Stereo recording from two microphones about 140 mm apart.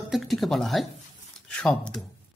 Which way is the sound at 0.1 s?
Centre (ahead or behind).